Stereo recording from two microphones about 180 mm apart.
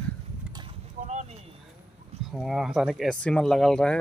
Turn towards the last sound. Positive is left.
turn(degrees=0)  # may be behind; listen again after turning